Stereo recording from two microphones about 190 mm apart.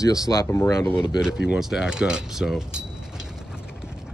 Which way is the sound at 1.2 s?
5° right (ahead or behind).